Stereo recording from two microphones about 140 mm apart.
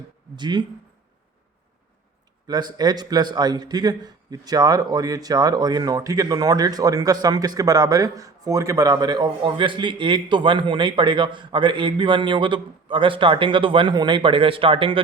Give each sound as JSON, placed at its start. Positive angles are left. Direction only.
{"t": 0.3, "sound": "speech", "side_deg": -30}
{"t": 2.5, "sound": "a man's voice", "side_deg": -30}